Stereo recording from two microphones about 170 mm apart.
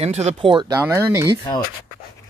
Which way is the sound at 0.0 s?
40° right (ahead or behind).